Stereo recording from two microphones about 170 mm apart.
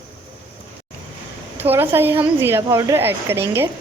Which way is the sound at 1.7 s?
10° right (ahead or behind).